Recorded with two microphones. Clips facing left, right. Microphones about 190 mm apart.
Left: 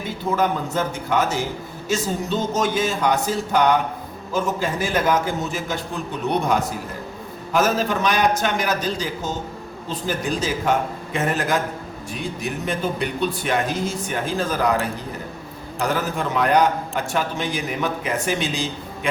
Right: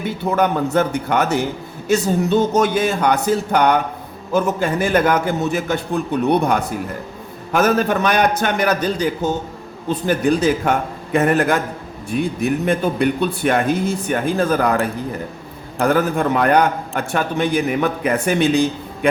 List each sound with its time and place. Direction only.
0.3 s a man's voice: 65° right (ahead or behind)
7.5 s a man's voice: 60° right (ahead or behind)